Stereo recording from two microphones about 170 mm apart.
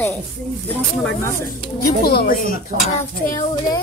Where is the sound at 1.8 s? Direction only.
65° left (ahead or behind).